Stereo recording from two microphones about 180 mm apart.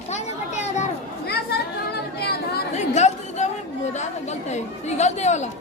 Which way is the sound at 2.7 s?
40° left (ahead or behind).